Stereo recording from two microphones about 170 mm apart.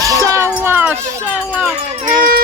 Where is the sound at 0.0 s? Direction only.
20° right (ahead or behind).